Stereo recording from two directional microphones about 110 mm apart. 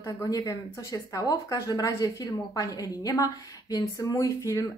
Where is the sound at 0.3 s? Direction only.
35° left (ahead or behind).